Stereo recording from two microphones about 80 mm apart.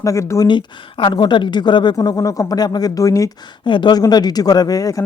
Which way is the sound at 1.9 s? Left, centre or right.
Left.